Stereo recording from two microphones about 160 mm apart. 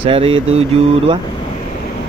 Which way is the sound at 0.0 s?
35° right (ahead or behind).